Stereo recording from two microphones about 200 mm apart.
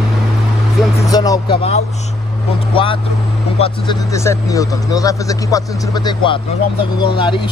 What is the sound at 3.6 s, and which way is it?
Speech, 20° left (ahead or behind).